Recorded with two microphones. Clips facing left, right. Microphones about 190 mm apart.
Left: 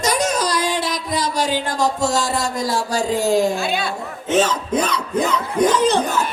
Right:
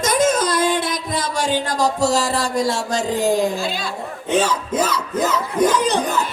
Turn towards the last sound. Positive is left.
turn(degrees=-15)  # may be behind; listen again after turning